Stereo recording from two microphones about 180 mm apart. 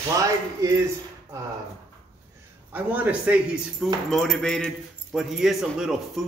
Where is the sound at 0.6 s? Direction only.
15° right (ahead or behind).